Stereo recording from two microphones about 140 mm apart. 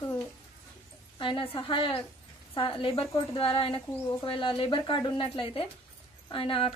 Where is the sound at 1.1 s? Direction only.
35° left (ahead or behind).